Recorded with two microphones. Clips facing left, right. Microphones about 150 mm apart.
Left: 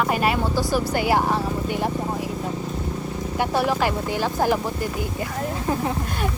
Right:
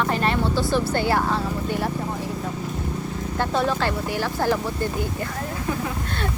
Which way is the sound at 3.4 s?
10° left (ahead or behind).